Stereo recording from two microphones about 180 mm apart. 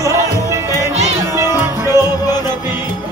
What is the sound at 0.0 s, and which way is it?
Music, 15° right (ahead or behind).